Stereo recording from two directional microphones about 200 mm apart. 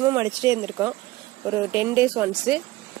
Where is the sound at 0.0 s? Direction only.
20° right (ahead or behind).